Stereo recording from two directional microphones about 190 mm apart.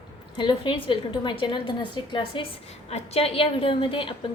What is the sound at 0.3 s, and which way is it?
A woman's voice, 25° left (ahead or behind).